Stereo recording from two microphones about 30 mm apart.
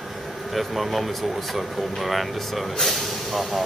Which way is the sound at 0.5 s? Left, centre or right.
Centre.